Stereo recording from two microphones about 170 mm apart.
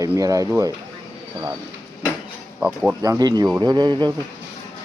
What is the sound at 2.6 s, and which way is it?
Speech, 5° right (ahead or behind).